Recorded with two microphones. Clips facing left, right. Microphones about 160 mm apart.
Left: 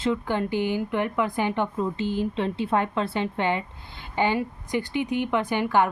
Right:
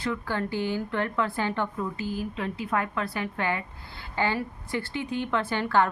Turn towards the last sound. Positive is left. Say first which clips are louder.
# left 2 dB
turn(degrees=15)  # may be behind; listen again after turning